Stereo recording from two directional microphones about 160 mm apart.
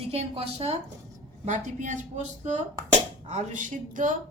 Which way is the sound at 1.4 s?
50° right (ahead or behind).